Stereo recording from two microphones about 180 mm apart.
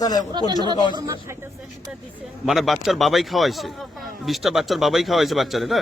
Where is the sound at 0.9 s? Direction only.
20° right (ahead or behind).